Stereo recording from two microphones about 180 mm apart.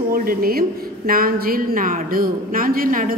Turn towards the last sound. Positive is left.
turn(degrees=-50)  # may be behind; listen again after turning